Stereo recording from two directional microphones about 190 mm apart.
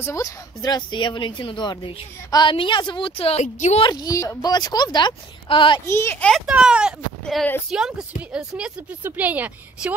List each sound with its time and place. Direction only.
0.0 s speech: 15° left (ahead or behind); by 3.8 s 35° left (ahead or behind)
3.8 s speech: 20° left (ahead or behind)
5.9 s speech: 10° left (ahead or behind)
6.3 s a woman's voice: 5° right (ahead or behind)